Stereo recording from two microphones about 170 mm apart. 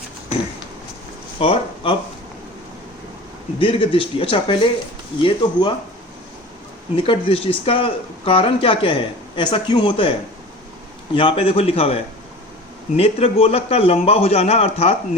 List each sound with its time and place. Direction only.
1.4 s speech: 30° left (ahead or behind)
3.6 s speech: 30° left (ahead or behind)
6.9 s speech: 35° left (ahead or behind)
11.1 s speech: 30° left (ahead or behind)
13.0 s speech: 35° left (ahead or behind)